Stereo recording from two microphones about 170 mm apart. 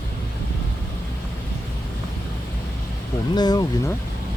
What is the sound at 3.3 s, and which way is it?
Speech, 25° left (ahead or behind).